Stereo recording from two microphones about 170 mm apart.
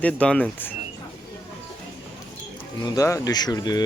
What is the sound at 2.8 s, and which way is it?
Speech, 20° left (ahead or behind).